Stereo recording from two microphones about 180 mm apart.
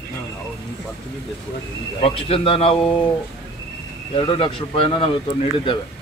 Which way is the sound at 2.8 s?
5° left (ahead or behind).